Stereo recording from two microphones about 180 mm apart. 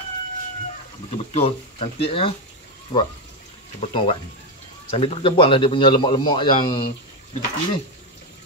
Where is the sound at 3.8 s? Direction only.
30° left (ahead or behind).